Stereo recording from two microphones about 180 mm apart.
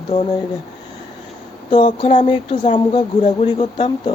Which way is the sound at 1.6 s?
25° left (ahead or behind).